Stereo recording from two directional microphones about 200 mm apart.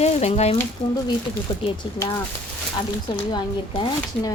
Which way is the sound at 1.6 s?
20° left (ahead or behind).